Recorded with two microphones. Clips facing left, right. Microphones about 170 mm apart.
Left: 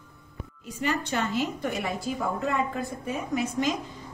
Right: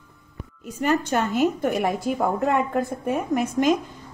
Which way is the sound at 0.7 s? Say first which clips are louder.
Right 6 dB; 45° right (ahead or behind).